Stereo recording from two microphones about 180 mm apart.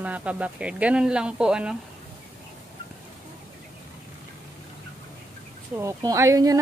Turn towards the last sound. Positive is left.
turn(degrees=-20)  # may be behind; listen again after turning